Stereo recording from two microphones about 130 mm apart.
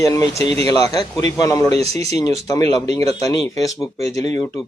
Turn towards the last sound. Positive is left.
turn(degrees=25)  # may be behind; listen again after turning